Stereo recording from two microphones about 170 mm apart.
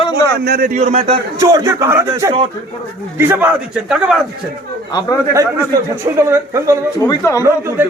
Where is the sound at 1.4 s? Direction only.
20° right (ahead or behind).